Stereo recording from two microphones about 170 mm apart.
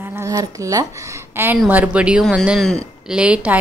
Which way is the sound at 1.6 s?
10° right (ahead or behind).